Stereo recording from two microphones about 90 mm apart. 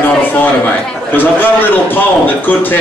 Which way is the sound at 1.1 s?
20° left (ahead or behind).